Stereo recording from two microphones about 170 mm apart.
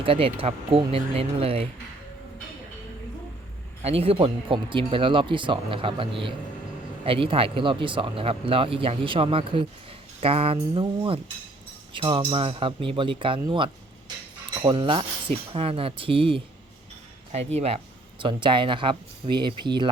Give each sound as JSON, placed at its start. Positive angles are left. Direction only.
{"t": 0.0, "sound": "speech", "side_deg": -35}
{"t": 3.8, "sound": "speech", "side_deg": -35}